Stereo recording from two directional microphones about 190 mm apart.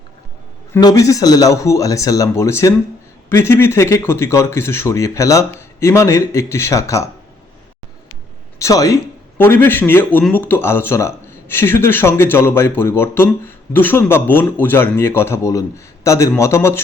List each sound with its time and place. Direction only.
0.7 s speech: 20° left (ahead or behind)
8.5 s speech: 15° left (ahead or behind)